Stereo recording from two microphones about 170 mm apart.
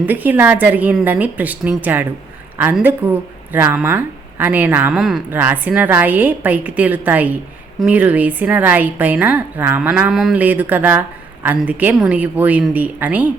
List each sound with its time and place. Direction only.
0.0 s a woman's voice: 10° right (ahead or behind)